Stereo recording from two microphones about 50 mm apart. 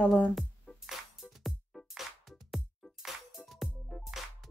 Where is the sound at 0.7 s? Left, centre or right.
Centre.